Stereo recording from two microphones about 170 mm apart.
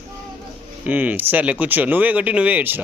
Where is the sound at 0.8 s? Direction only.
10° right (ahead or behind).